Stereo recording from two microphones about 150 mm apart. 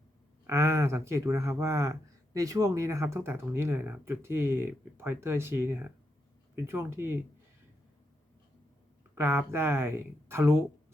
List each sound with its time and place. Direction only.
0.4 s speech: 20° right (ahead or behind)
9.1 s speech: 15° right (ahead or behind)